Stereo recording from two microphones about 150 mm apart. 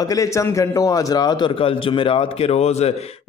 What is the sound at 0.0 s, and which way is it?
A man's voice, 25° left (ahead or behind).